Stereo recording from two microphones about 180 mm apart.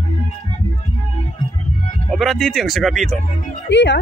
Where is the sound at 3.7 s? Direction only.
75° left (ahead or behind).